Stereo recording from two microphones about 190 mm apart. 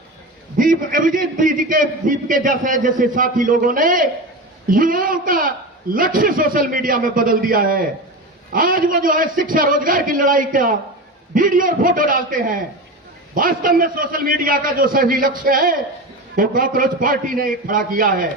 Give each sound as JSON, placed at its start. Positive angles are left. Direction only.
{"t": 0.5, "sound": "a man's voice", "side_deg": -45}